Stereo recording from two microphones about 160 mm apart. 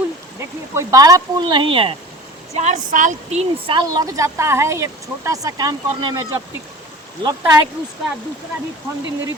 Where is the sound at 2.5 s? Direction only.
50° right (ahead or behind); by 6.4 s 25° right (ahead or behind).